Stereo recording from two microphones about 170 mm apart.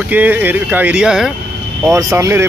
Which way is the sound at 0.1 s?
10° right (ahead or behind).